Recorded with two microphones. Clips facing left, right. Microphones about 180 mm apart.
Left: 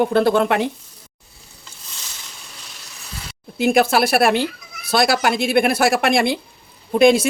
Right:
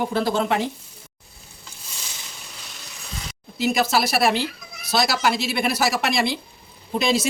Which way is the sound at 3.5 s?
55° left (ahead or behind).